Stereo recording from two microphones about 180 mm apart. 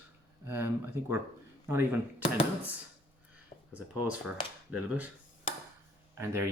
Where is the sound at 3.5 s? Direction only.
40° left (ahead or behind).